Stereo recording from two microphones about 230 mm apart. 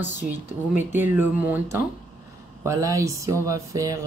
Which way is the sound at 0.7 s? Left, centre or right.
Left.